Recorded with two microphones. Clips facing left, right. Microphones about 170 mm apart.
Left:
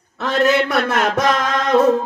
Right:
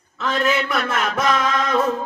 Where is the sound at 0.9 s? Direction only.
65° left (ahead or behind).